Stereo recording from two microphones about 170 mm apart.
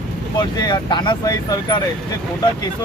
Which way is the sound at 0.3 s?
25° left (ahead or behind).